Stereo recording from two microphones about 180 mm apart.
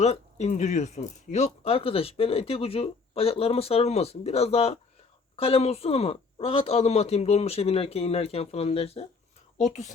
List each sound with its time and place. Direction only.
0.0 s speech: 35° left (ahead or behind)